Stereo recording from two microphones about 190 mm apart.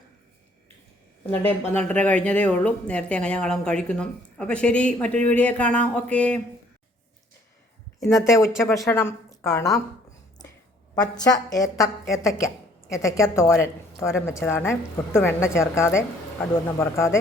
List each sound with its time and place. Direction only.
1.6 s speech: 10° left (ahead or behind)
7.9 s speech: 15° left (ahead or behind)
10.9 s a woman's voice: 20° left (ahead or behind)